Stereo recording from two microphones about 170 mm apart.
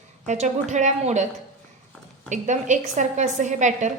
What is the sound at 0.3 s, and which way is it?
A woman's voice, 45° right (ahead or behind).